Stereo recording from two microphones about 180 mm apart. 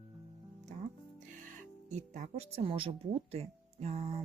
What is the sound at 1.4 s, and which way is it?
Speech, 45° right (ahead or behind).